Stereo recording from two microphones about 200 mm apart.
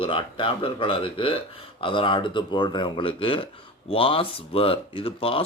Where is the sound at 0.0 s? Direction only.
25° left (ahead or behind).